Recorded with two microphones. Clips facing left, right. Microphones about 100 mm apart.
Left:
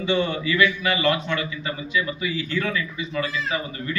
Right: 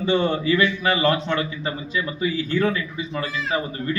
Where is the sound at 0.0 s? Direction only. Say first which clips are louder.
Right 3 dB; 35° right (ahead or behind).